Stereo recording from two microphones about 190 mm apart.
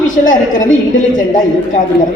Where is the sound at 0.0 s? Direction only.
45° left (ahead or behind).